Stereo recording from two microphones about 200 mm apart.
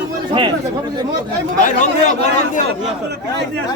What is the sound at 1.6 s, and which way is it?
Speech, 40° left (ahead or behind).